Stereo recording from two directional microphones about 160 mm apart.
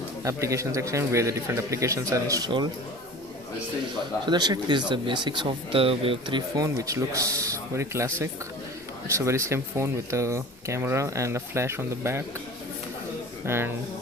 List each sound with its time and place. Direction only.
0.3 s speech: 20° right (ahead or behind)
4.3 s speech: 25° right (ahead or behind)
13.4 s speech: 15° right (ahead or behind)